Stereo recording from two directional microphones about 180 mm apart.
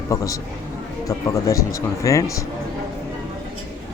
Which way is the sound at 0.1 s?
20° left (ahead or behind).